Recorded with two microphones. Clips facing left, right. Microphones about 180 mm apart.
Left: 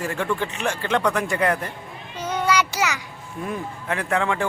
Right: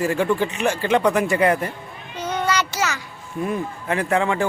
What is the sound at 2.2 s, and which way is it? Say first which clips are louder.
Child singing: left 1 dB; 10° left (ahead or behind).